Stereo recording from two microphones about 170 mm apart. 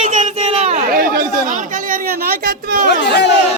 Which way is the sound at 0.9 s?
55° right (ahead or behind).